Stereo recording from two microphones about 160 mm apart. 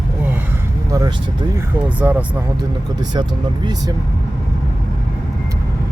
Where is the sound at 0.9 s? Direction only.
25° right (ahead or behind).